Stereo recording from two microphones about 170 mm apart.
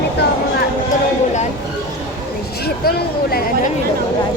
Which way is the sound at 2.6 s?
65° left (ahead or behind).